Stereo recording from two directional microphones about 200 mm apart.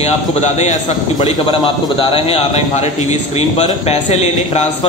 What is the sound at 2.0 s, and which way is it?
A man's voice, 25° left (ahead or behind).